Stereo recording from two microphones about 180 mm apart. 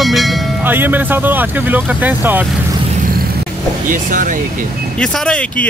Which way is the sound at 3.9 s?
45° right (ahead or behind).